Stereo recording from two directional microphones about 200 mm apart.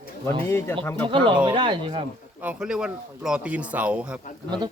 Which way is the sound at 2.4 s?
5° right (ahead or behind).